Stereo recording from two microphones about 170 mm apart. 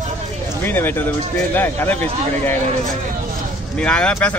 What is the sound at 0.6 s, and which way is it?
Speech, 10° left (ahead or behind).